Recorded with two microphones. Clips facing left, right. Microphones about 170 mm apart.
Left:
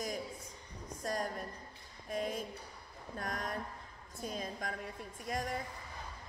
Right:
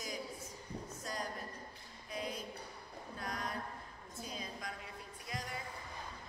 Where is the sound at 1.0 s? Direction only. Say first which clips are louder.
Left 7 dB; 50° left (ahead or behind).